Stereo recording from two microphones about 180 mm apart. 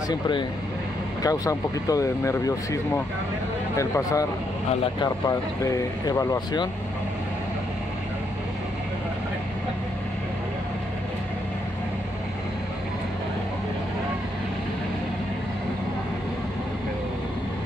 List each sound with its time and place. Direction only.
0.1 s speech: 25° left (ahead or behind)